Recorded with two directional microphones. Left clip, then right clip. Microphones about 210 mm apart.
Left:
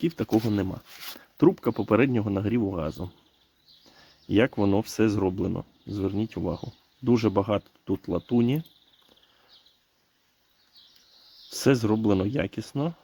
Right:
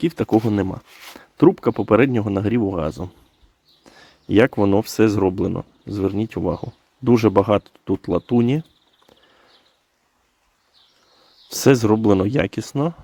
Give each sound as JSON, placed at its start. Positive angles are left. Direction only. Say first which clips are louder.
{"t": 0.0, "sound": "speech", "louder": "right 7 dB", "side_deg": -20}
{"t": 11.4, "sound": "speech", "louder": "right 8 dB", "side_deg": -15}